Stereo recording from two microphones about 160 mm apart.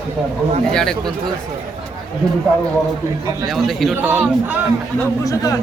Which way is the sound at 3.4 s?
Centre (ahead or behind).